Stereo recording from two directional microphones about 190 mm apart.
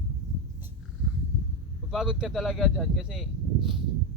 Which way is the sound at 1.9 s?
5° right (ahead or behind).